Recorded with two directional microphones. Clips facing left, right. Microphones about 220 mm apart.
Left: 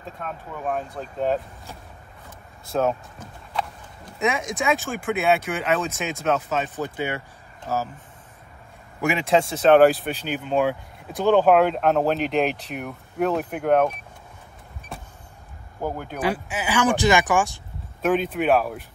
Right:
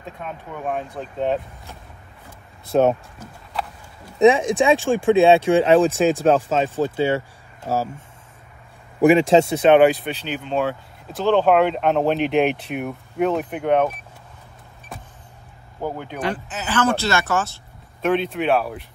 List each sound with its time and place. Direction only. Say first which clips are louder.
0.0 s speech: right 1 dB; centre (ahead or behind)
4.2 s speech: right 10 dB; 30° right (ahead or behind)
9.0 s speech: right 7 dB; 30° right (ahead or behind)
9.7 s speech: left 1 dB; centre (ahead or behind)
15.8 s speech: even; 5° left (ahead or behind)